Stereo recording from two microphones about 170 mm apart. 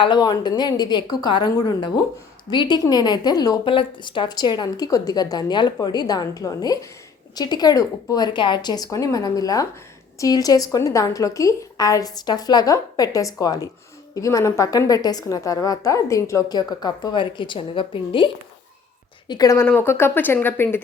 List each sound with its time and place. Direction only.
0.0 s a woman's voice: 25° left (ahead or behind)
19.3 s speech: 20° left (ahead or behind)